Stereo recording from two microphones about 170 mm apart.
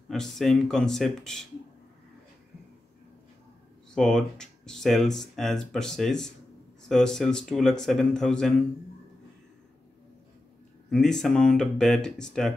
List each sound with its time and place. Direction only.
0.1 s speech: centre (ahead or behind)
3.9 s speech: 5° left (ahead or behind)
10.9 s speech: 5° left (ahead or behind)